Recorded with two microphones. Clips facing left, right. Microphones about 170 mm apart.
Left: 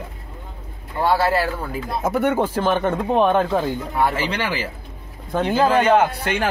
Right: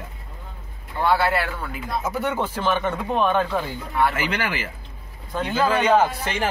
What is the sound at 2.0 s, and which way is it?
Speech, 50° left (ahead or behind).